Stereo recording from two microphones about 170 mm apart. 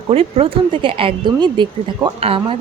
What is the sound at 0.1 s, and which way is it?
Speech, 35° right (ahead or behind).